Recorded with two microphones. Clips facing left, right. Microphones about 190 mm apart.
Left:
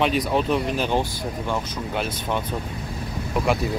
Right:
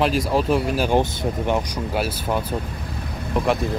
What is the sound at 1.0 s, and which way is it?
Speech, 20° right (ahead or behind).